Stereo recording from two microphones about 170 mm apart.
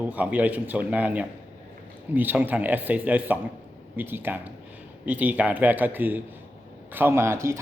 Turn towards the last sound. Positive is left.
turn(degrees=-15)  # may be behind; listen again after turning